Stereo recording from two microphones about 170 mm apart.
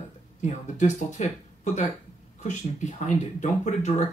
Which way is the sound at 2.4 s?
45° left (ahead or behind).